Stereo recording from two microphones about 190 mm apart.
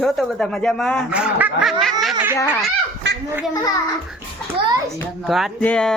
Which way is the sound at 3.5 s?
20° left (ahead or behind).